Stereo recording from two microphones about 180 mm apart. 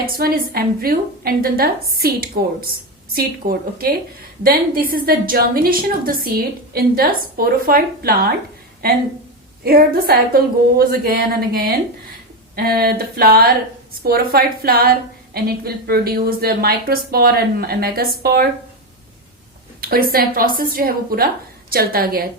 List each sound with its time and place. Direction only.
0.0 s a woman's voice: 55° right (ahead or behind)
9.6 s a woman's voice: 55° right (ahead or behind)
19.8 s a woman's voice: 55° right (ahead or behind)